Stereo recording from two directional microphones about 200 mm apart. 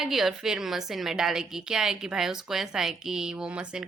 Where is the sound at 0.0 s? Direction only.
Centre (ahead or behind).